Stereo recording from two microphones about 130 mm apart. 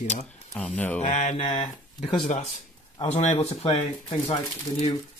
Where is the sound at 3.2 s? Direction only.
60° left (ahead or behind).